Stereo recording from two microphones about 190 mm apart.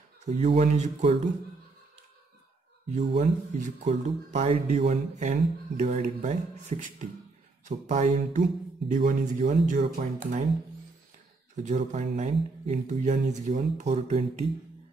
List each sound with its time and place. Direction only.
0.2 s speech: 35° right (ahead or behind)
2.9 s speech: 40° right (ahead or behind)
11.6 s speech: 35° right (ahead or behind)